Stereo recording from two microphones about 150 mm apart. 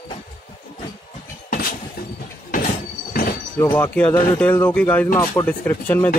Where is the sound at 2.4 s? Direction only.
65° left (ahead or behind).